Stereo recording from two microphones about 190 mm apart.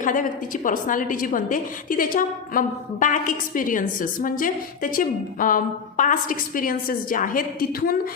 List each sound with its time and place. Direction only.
0.0 s a woman's voice: 45° left (ahead or behind)